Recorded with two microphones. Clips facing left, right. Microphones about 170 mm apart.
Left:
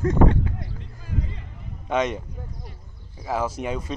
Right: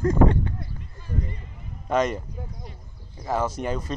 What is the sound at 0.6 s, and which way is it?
Music, 90° left.